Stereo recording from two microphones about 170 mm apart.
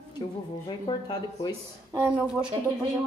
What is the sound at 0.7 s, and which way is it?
Speech, 25° left (ahead or behind).